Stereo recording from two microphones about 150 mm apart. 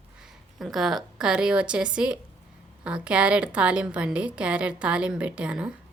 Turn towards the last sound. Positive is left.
turn(degrees=-5)  # may be behind; listen again after turning